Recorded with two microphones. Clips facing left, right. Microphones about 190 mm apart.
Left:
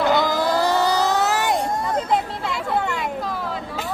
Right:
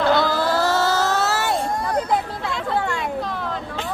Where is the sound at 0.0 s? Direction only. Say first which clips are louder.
Even; 15° left (ahead or behind).